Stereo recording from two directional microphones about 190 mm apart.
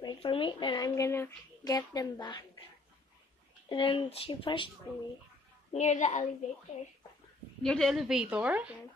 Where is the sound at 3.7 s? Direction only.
25° left (ahead or behind).